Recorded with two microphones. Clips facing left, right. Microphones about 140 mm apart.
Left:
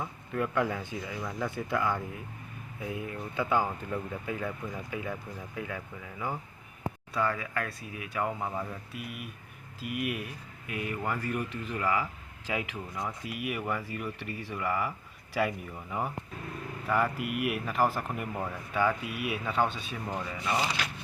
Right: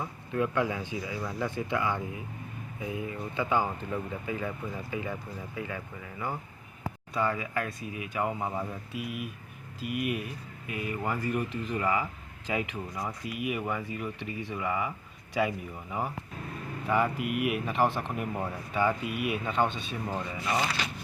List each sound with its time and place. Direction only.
0.0 s speech: 5° right (ahead or behind)
3.8 s speech: 5° right (ahead or behind)
17.2 s speech: 5° left (ahead or behind)
19.0 s speech: 50° right (ahead or behind)
19.3 s speech: 5° left (ahead or behind)
20.1 s speech: 10° right (ahead or behind)